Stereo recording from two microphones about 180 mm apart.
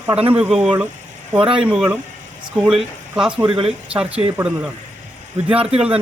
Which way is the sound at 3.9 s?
5° right (ahead or behind).